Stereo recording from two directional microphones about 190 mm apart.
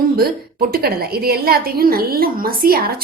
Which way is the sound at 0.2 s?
50° right (ahead or behind).